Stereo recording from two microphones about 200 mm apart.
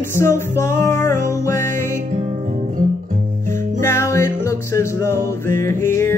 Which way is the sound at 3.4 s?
40° right (ahead or behind).